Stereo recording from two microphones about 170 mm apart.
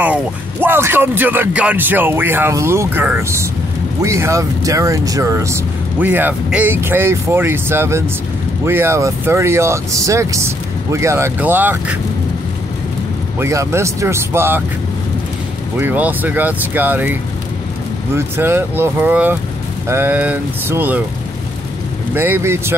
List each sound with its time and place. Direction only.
0.0 s speech: 10° right (ahead or behind)
13.4 s speech: 15° right (ahead or behind)
15.8 s speech: 10° right (ahead or behind)
22.1 s speech: 10° right (ahead or behind)